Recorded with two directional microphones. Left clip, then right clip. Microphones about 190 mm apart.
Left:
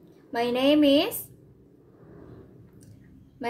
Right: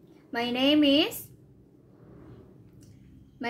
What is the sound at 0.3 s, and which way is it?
Speech, 30° right (ahead or behind).